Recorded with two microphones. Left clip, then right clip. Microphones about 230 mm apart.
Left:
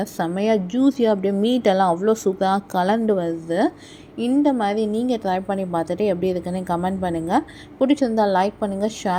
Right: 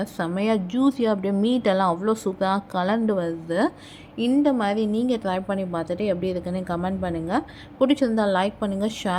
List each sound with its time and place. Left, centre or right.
0.0 s a woman's voice: centre